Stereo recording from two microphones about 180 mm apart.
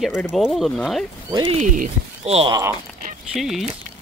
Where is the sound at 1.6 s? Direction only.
45° right (ahead or behind).